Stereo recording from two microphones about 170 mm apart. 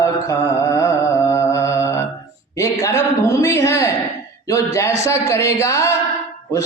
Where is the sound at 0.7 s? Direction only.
15° left (ahead or behind).